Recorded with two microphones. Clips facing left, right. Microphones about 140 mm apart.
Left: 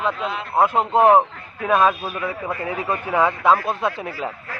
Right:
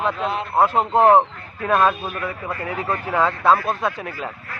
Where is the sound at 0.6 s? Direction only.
15° left (ahead or behind).